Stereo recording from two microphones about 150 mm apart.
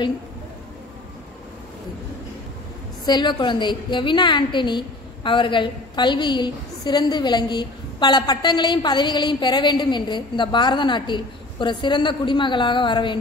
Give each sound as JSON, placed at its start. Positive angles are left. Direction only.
{"t": 3.1, "sound": "a woman's voice", "side_deg": 30}